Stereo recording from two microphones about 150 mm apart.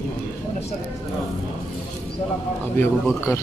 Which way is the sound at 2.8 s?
15° left (ahead or behind).